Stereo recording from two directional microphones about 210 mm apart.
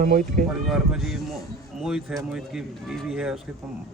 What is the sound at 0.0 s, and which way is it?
Speech, 40° right (ahead or behind).